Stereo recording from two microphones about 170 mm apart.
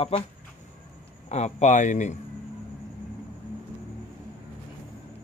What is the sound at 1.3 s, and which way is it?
Speech, 40° left (ahead or behind).